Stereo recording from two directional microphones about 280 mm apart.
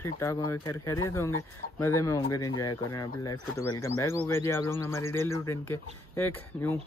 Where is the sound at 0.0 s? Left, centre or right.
Centre.